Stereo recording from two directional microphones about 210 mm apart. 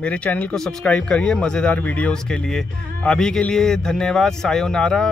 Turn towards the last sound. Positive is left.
turn(degrees=5)  # may be behind; listen again after turning